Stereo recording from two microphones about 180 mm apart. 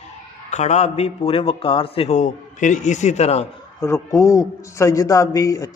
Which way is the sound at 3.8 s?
15° left (ahead or behind).